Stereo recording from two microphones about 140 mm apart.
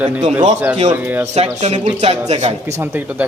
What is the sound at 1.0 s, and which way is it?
Speech, 15° right (ahead or behind).